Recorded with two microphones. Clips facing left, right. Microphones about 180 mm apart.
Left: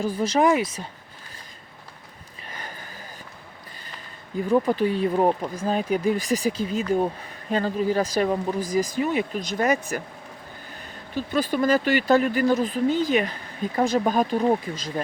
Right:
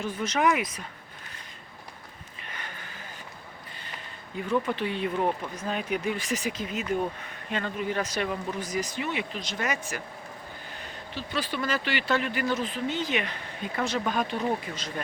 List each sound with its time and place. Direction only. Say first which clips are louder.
0.0 s speech: left 5 dB; 35° left (ahead or behind)
2.5 s a sound: left 3 dB; 35° left (ahead or behind)
4.4 s speech: left 7 dB; 35° left (ahead or behind)
11.1 s speech: left 8 dB; 45° left (ahead or behind)
14.7 s speech: left 5 dB; 30° left (ahead or behind)